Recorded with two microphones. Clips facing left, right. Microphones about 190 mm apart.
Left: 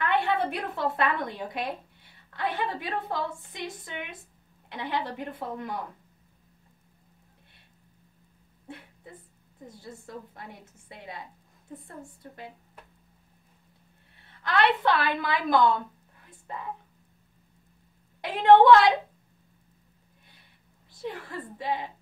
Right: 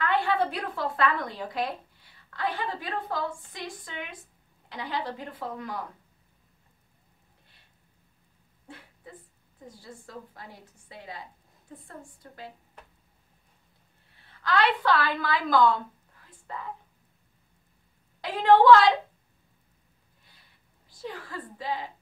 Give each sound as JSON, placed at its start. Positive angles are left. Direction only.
{"t": 0.0, "sound": "a woman's voice", "side_deg": 25}
{"t": 9.7, "sound": "a woman's voice", "side_deg": 25}
{"t": 14.4, "sound": "a woman's voice", "side_deg": 25}
{"t": 18.2, "sound": "a woman's voice", "side_deg": 25}
{"t": 21.0, "sound": "a woman's voice", "side_deg": 25}